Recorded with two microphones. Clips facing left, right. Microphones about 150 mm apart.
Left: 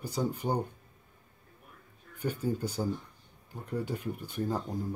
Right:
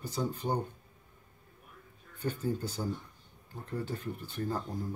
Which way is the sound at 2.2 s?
10° left (ahead or behind).